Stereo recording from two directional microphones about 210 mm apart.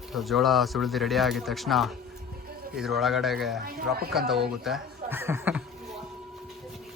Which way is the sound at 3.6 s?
45° right (ahead or behind).